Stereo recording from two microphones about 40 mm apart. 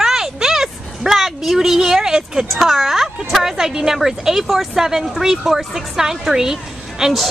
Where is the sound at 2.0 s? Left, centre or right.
Centre.